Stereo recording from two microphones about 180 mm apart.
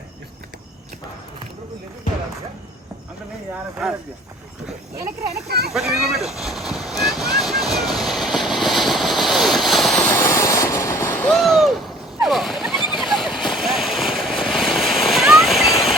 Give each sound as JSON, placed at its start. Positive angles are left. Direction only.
{"t": 5.5, "sound": "speech", "side_deg": -65}
{"t": 5.7, "sound": "boat", "side_deg": 0}
{"t": 10.1, "sound": "vehicle", "side_deg": 15}